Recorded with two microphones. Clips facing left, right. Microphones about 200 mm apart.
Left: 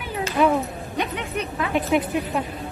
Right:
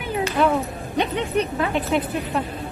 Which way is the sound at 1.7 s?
15° left (ahead or behind).